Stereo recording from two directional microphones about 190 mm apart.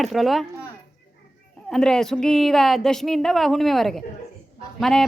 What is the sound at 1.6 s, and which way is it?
A woman's voice, 5° left (ahead or behind).